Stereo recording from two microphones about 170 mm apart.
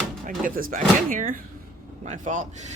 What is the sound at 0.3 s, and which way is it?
Speech, 55° right (ahead or behind).